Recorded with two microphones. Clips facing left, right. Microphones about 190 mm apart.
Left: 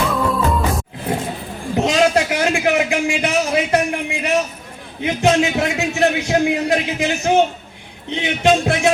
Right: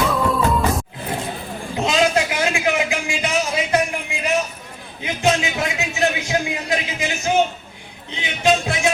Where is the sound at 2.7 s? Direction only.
65° left (ahead or behind).